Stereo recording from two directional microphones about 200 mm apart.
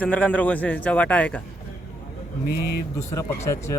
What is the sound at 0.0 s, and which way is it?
A man's voice, 5° left (ahead or behind).